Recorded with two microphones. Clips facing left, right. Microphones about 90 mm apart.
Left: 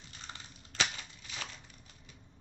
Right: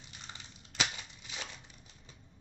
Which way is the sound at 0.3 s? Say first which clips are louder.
Left 2 dB; 20° right (ahead or behind).